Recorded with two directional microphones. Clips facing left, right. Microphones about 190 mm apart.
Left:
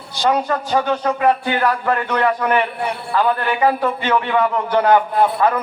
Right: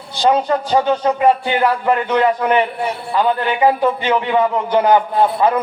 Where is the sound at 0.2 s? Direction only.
20° right (ahead or behind).